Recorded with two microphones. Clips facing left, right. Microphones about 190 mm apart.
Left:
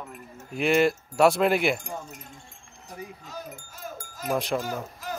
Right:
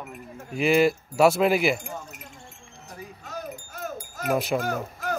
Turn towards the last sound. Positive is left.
turn(degrees=-60)  # may be behind; listen again after turning